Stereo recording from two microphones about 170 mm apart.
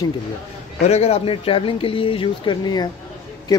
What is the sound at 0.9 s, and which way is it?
Speech, 35° left (ahead or behind).